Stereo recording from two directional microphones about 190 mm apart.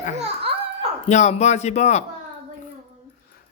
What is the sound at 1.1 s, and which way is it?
Speech, 35° left (ahead or behind).